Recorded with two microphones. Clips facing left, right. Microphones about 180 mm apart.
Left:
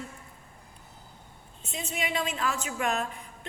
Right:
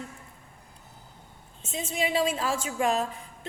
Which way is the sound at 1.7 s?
35° right (ahead or behind).